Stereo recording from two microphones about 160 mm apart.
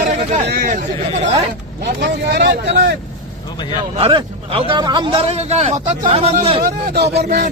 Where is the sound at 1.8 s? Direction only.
90° right.